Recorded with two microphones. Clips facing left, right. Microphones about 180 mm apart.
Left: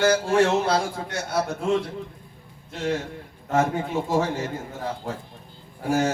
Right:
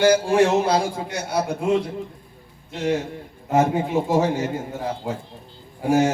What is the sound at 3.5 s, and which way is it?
A man's voice, 15° right (ahead or behind).